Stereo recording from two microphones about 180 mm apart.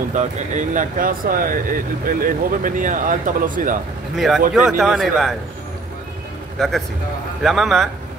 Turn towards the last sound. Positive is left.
turn(degrees=0)  # may be behind; listen again after turning